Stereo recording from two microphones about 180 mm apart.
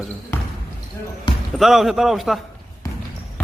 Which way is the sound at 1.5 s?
Centre (ahead or behind).